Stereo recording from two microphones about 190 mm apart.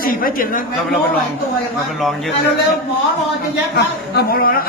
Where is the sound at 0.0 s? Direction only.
50° left (ahead or behind).